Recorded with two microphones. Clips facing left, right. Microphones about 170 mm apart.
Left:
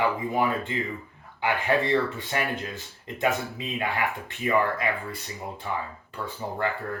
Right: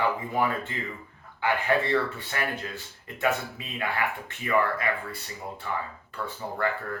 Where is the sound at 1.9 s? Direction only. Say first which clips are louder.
Left 2 dB; 20° left (ahead or behind).